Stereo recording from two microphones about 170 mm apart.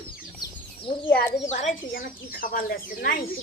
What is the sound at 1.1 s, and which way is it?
A child's voice, 55° left (ahead or behind).